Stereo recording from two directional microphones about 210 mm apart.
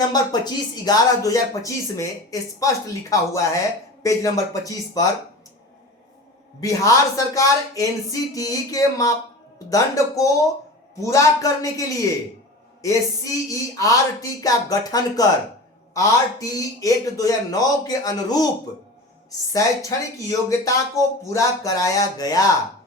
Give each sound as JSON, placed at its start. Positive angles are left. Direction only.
{"t": 0.1, "sound": "speech", "side_deg": 20}
{"t": 6.6, "sound": "speech", "side_deg": 15}
{"t": 19.5, "sound": "speech", "side_deg": 15}